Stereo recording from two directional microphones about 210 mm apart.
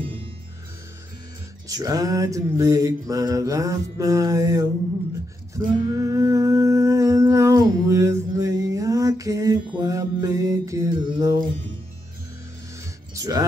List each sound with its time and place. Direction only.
1.7 s mantra: 15° right (ahead or behind)
5.9 s humming: 15° right (ahead or behind)
13.1 s speech: 15° right (ahead or behind)